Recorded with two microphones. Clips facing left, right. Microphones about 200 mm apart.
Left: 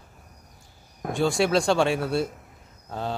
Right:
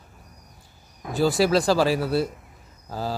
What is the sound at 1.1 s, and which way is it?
A man's voice, centre (ahead or behind).